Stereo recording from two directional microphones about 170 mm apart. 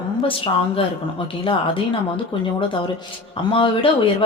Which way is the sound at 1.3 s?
30° left (ahead or behind).